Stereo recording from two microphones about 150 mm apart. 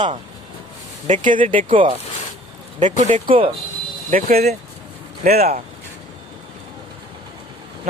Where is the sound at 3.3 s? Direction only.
35° right (ahead or behind).